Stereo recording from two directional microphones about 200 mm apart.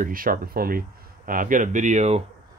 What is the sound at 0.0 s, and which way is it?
Speech, 45° right (ahead or behind).